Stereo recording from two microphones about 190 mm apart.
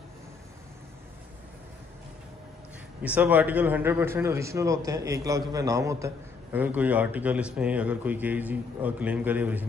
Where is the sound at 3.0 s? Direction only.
10° right (ahead or behind).